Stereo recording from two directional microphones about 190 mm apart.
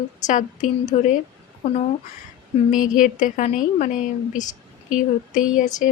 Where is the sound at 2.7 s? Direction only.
45° left (ahead or behind).